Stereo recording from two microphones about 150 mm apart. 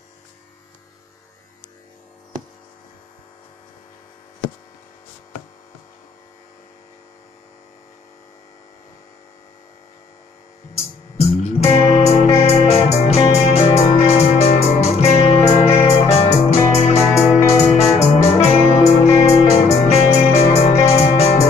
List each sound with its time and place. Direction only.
10.7 s music: 45° left (ahead or behind)